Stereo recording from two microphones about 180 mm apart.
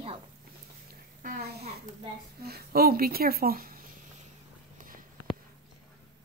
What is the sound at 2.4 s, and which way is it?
Speech, 60° right (ahead or behind).